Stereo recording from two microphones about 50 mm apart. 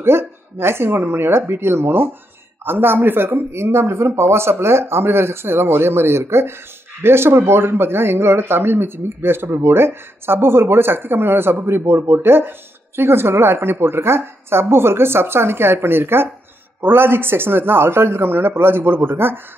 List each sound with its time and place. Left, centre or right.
0.0 s speech: right